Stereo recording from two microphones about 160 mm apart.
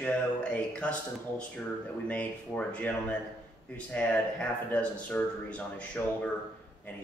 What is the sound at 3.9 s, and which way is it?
Speech, 10° left (ahead or behind).